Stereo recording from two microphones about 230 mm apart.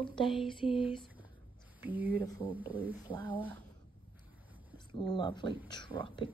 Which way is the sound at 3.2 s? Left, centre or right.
Centre.